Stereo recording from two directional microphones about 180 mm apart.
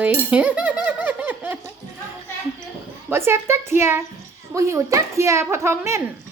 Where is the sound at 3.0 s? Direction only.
15° right (ahead or behind).